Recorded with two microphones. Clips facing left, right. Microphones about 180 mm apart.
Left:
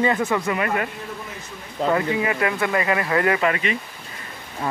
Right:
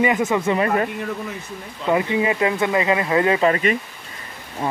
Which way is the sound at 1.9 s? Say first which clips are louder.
Right 3 dB; 20° right (ahead or behind).